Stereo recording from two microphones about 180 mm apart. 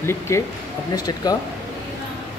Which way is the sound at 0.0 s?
15° left (ahead or behind).